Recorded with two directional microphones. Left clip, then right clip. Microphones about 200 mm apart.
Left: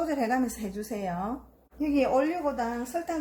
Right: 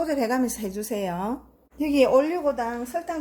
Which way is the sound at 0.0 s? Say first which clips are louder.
Right 3 dB; 45° right (ahead or behind).